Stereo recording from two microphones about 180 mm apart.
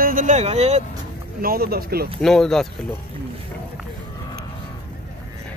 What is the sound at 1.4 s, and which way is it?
Speech, 55° right (ahead or behind).